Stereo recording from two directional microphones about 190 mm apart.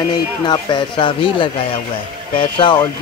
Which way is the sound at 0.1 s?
20° left (ahead or behind).